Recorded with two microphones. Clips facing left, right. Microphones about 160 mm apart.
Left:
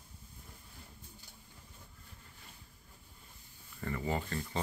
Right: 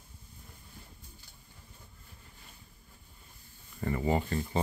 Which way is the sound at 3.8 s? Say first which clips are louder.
Right 6 dB; 20° right (ahead or behind).